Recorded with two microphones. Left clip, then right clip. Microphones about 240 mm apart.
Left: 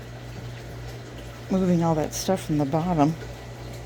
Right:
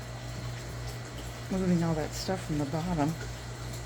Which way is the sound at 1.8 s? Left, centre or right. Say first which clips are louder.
Left 8 dB; left.